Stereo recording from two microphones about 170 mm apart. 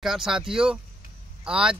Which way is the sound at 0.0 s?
Centre (ahead or behind).